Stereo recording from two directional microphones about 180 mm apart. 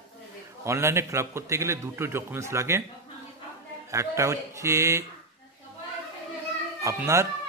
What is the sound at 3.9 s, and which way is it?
A man's voice, 15° right (ahead or behind).